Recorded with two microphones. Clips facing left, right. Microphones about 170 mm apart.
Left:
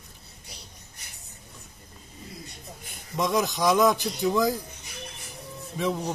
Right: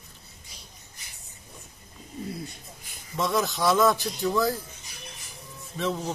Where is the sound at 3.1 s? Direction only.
15° left (ahead or behind).